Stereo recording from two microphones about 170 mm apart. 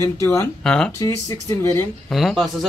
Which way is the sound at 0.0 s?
15° left (ahead or behind).